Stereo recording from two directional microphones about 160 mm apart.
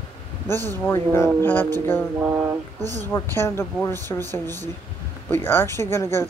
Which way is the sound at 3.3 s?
15° left (ahead or behind).